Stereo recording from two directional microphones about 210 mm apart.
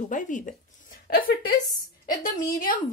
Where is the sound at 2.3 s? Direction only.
15° left (ahead or behind).